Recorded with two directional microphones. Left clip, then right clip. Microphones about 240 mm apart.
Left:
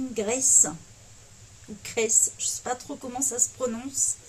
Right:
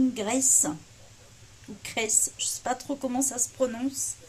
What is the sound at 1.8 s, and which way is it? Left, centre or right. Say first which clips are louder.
Speech: left 3 dB; right.